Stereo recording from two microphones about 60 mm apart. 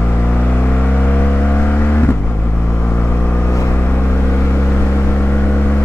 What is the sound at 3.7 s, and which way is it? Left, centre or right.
Vehicle, left.